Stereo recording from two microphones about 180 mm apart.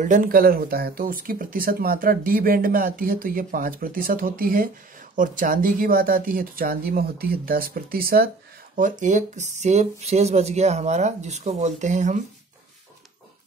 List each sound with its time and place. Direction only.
0.0 s speech: 50° right (ahead or behind)